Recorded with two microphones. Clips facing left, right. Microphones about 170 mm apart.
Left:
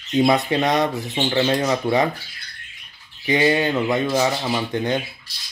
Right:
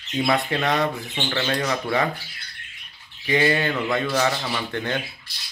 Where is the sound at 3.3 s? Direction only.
20° left (ahead or behind).